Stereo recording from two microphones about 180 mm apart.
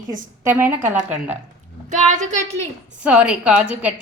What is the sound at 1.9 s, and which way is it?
Speech, 40° right (ahead or behind).